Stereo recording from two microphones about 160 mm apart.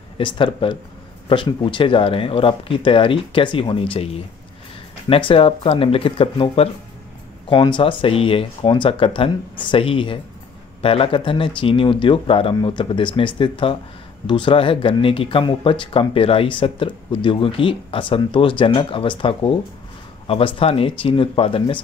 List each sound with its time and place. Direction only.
0.2 s speech: 30° left (ahead or behind)